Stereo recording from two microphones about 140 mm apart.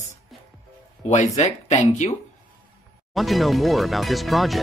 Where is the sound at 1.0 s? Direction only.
55° left (ahead or behind).